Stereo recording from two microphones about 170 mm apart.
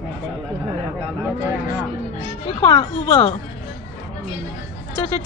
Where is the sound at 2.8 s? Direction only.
30° left (ahead or behind).